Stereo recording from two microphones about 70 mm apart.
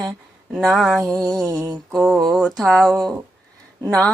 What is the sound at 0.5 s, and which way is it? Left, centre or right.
Speech, centre.